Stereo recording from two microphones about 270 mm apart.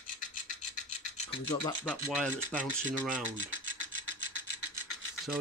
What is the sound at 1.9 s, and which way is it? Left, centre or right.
Speech, centre.